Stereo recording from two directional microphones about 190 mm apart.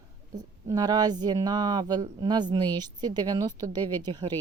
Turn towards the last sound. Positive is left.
turn(degrees=-25)  # may be behind; listen again after turning